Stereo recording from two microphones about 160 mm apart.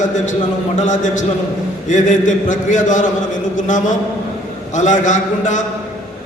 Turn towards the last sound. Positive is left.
turn(degrees=50)  # may be behind; listen again after turning